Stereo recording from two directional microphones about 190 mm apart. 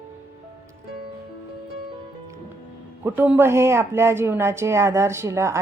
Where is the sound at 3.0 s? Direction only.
10° right (ahead or behind).